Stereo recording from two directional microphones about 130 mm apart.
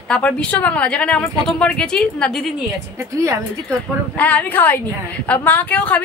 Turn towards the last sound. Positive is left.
turn(degrees=10)  # may be behind; listen again after turning